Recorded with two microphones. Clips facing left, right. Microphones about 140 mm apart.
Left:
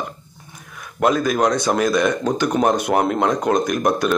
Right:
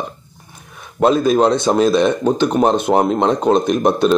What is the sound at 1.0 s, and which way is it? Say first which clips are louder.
Speech: right 4 dB; 25° right (ahead or behind).